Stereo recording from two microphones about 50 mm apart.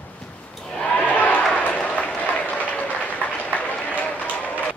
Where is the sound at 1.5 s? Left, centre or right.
Left.